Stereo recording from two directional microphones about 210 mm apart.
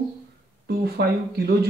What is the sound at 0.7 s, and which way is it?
Speech, 50° right (ahead or behind).